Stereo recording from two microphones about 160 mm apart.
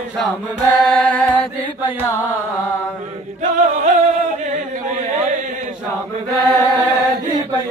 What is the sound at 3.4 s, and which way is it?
Music, 50° right (ahead or behind).